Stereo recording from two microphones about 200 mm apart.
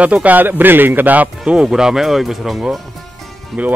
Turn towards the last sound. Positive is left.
turn(degrees=0)  # may be behind; listen again after turning